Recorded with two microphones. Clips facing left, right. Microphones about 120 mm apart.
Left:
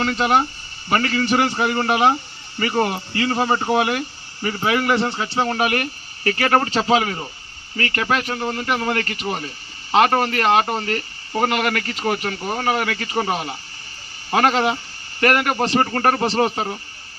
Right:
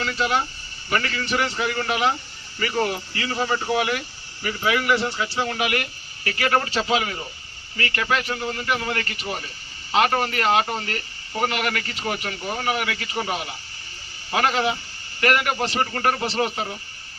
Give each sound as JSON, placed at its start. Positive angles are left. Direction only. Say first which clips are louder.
{"t": 0.0, "sound": "a man's voice", "louder": "left 5 dB", "side_deg": 40}
{"t": 5.1, "sound": "speech", "louder": "left 4 dB", "side_deg": 35}